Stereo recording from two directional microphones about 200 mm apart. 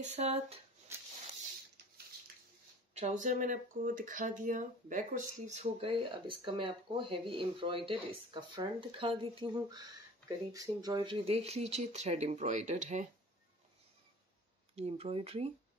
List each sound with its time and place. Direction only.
0.0 s speech: 35° right (ahead or behind)
0.9 s a sound: 10° right (ahead or behind)
2.9 s speech: 35° right (ahead or behind)
14.8 s speech: 30° right (ahead or behind)